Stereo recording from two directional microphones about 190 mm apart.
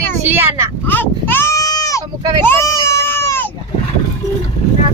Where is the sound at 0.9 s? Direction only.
10° left (ahead or behind).